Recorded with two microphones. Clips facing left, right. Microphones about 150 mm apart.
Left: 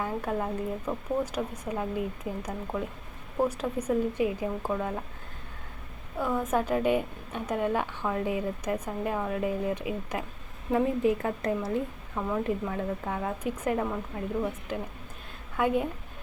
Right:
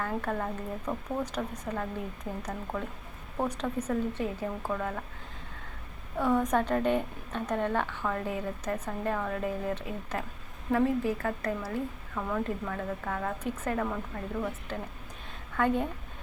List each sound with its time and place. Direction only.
0.0 s a woman's voice: 10° left (ahead or behind)
6.1 s a woman's voice: 5° left (ahead or behind)